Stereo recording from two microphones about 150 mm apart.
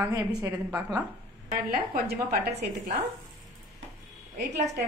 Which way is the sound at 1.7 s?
75° right (ahead or behind).